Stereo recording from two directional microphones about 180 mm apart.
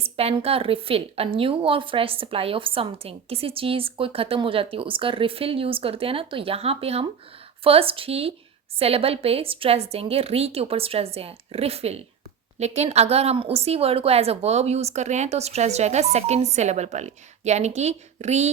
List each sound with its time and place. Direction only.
0.0 s a woman's voice: 35° right (ahead or behind)